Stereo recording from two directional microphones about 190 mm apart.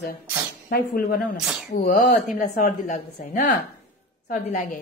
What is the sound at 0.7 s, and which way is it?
Speech, 50° left (ahead or behind).